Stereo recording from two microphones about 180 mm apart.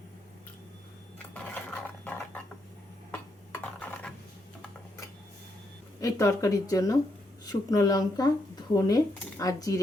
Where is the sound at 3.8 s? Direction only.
5° left (ahead or behind).